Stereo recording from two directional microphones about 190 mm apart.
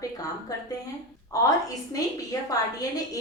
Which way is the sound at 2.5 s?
20° left (ahead or behind).